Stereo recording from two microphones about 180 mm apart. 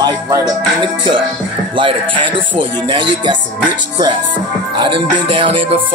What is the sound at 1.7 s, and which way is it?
Speech, 25° right (ahead or behind).